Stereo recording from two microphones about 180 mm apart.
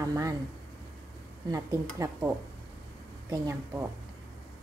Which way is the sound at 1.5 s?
15° right (ahead or behind).